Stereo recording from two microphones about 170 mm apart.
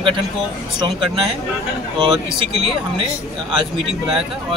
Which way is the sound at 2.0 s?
30° right (ahead or behind).